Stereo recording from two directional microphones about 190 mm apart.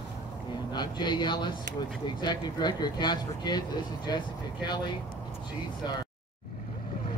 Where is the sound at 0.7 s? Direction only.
20° left (ahead or behind).